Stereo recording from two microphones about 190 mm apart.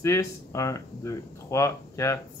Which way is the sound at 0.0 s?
15° left (ahead or behind).